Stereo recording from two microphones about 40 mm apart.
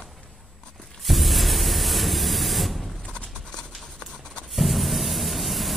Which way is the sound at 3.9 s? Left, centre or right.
Left.